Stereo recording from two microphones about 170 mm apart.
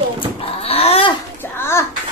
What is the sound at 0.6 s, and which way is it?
Dog, 35° left (ahead or behind).